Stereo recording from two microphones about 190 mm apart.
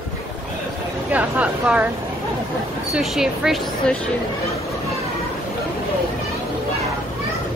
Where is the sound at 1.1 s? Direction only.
5° right (ahead or behind).